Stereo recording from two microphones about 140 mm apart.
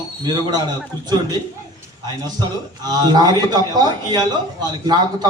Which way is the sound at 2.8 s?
30° right (ahead or behind).